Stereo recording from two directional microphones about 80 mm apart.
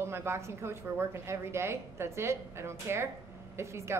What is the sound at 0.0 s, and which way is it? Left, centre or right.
A woman's voice, right.